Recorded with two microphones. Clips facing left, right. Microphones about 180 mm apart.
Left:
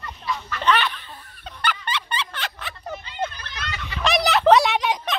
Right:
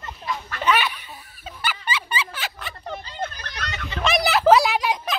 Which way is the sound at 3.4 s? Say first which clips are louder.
Right 1 dB; 45° right (ahead or behind).